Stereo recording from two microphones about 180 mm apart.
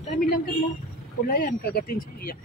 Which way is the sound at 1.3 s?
55° left (ahead or behind).